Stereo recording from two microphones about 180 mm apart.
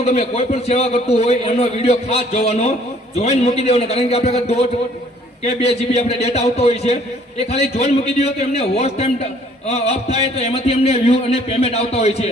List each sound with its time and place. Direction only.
0.0 s a man's voice: 35° left (ahead or behind)